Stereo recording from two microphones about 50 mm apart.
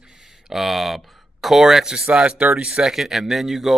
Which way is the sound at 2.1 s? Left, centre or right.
Right.